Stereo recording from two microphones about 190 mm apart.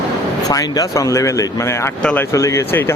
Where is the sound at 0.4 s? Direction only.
20° left (ahead or behind).